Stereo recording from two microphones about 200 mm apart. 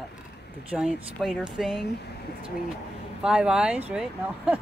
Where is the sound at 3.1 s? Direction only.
5° right (ahead or behind).